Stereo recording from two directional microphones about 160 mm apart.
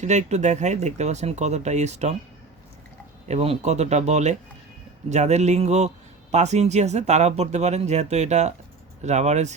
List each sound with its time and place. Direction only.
0.0 s speech: 45° right (ahead or behind)
3.2 s speech: 40° right (ahead or behind)